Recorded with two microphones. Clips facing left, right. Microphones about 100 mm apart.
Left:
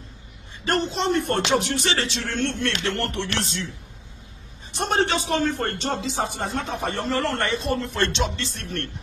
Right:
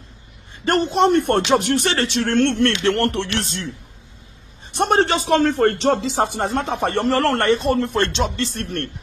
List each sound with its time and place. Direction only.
0.7 s speech: 55° right (ahead or behind)
3.3 s speech: 55° right (ahead or behind)
4.7 s speech: 60° right (ahead or behind)